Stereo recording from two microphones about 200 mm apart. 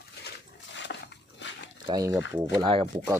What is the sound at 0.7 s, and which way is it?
Dog, 65° left (ahead or behind).